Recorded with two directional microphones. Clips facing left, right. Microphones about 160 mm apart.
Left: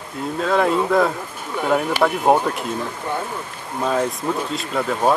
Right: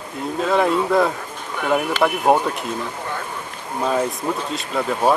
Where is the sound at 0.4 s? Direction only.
Centre (ahead or behind).